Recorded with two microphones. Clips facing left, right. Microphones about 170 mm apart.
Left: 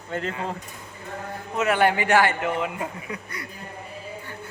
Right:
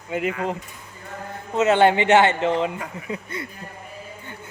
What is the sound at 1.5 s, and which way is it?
A man's voice, 25° right (ahead or behind).